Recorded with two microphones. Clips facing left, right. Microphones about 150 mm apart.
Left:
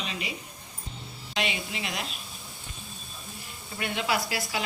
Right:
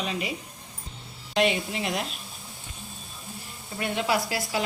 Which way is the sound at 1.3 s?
45° right (ahead or behind).